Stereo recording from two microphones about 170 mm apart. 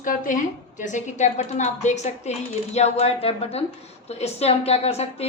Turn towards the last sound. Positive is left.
turn(degrees=35)  # may be behind; listen again after turning